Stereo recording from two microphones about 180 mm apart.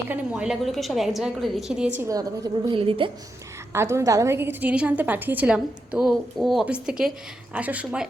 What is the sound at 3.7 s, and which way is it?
A woman's voice, 15° right (ahead or behind).